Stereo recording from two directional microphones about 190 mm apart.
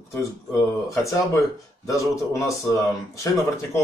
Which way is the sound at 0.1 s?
15° left (ahead or behind).